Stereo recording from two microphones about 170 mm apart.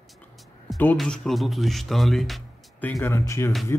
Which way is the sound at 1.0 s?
Centre (ahead or behind).